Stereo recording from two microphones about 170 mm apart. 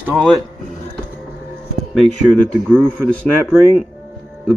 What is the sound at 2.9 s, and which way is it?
Speech, 5° left (ahead or behind).